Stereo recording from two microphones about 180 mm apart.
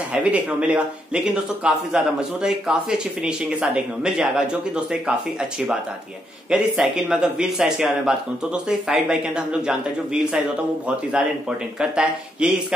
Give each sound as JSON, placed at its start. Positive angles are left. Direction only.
{"t": 0.1, "sound": "speech", "side_deg": -5}